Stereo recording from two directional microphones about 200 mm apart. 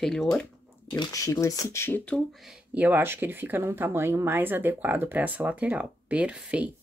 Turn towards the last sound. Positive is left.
turn(degrees=-5)  # may be behind; listen again after turning